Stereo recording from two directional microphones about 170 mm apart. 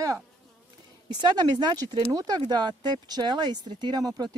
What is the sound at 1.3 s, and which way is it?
Speech, 25° right (ahead or behind).